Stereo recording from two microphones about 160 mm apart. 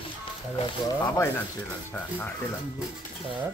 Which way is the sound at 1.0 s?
15° left (ahead or behind).